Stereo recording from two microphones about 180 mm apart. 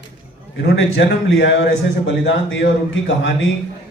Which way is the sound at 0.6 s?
85° left.